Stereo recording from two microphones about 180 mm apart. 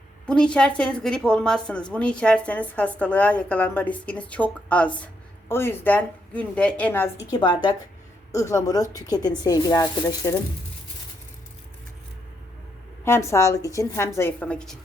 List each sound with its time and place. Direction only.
0.3 s a woman's voice: 5° left (ahead or behind)
7.3 s speech: 25° left (ahead or behind)
13.1 s a woman's voice: 15° left (ahead or behind)